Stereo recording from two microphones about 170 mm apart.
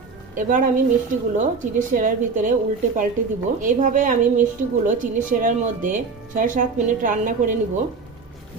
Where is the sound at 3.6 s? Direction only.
50° right (ahead or behind).